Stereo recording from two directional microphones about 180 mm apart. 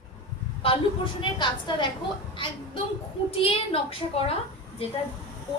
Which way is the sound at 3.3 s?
30° left (ahead or behind).